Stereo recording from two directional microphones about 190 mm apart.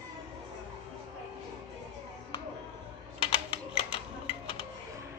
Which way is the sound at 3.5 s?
30° left (ahead or behind).